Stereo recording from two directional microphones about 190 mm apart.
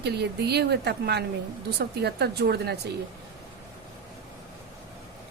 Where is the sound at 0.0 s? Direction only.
60° right (ahead or behind).